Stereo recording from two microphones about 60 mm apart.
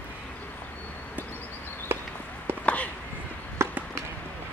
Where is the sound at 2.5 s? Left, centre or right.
Right.